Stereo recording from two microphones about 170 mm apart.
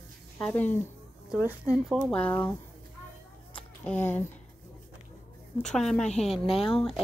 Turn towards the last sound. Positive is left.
turn(degrees=0)  # may be behind; listen again after turning